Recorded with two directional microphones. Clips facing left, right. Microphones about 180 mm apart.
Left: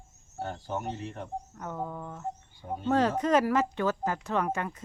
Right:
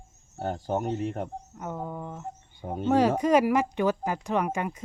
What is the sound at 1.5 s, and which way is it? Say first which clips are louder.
Speech: right 3 dB; 15° right (ahead or behind).